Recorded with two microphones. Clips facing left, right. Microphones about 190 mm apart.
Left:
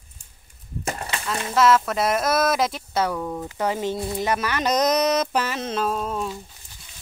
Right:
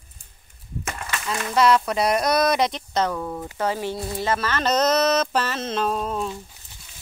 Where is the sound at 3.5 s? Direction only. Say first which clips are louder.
Left 1 dB; 15° left (ahead or behind); by 6.3 s centre (ahead or behind).